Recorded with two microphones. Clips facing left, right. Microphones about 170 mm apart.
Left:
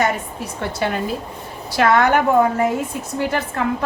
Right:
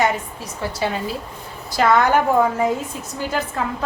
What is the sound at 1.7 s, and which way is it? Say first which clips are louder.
Speech: left 1 dB; 65° left (ahead or behind).